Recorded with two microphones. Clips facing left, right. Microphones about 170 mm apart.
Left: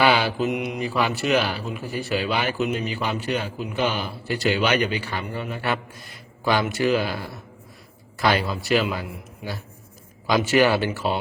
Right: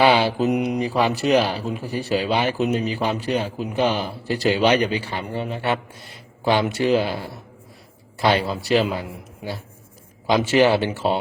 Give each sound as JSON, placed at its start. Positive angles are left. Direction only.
{"t": 0.0, "sound": "speech", "side_deg": -35}
{"t": 8.2, "sound": "a man's voice", "side_deg": -30}